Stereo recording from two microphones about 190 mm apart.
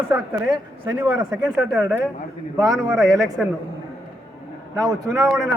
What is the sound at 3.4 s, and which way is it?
Speech, 5° right (ahead or behind).